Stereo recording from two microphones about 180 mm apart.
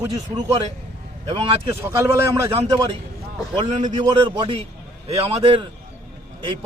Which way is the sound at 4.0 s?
25° right (ahead or behind).